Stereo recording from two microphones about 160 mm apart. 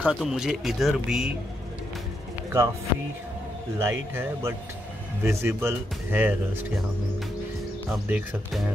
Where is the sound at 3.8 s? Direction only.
15° right (ahead or behind).